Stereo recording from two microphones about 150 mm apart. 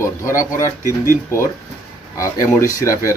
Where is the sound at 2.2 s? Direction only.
20° left (ahead or behind).